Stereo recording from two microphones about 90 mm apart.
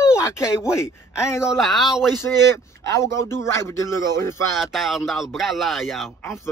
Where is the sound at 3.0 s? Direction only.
35° left (ahead or behind).